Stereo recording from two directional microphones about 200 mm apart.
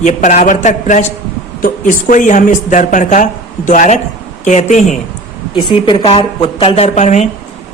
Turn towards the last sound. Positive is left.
turn(degrees=35)  # may be behind; listen again after turning